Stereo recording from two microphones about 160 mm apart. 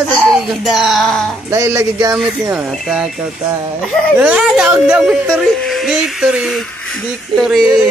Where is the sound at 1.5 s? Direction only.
15° right (ahead or behind); by 7.6 s centre (ahead or behind).